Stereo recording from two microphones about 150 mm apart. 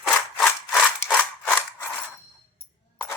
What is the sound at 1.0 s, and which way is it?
Scissors, 5° left (ahead or behind).